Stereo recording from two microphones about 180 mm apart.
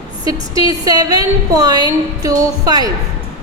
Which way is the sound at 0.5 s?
20° right (ahead or behind).